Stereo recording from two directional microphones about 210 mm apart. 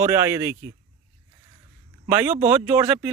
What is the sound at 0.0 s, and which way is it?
Speech, 10° right (ahead or behind).